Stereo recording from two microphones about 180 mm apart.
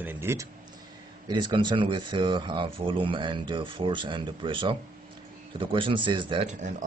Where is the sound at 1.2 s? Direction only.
25° right (ahead or behind).